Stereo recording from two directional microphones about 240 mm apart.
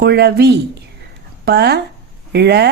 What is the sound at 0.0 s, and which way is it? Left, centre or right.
Speech, right.